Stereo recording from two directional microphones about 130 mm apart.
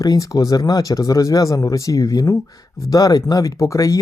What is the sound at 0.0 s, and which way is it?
Speech, 25° left (ahead or behind).